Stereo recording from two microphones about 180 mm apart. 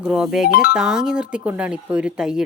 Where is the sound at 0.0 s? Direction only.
5° right (ahead or behind).